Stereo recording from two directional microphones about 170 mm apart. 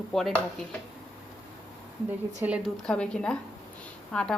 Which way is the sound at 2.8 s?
5° left (ahead or behind).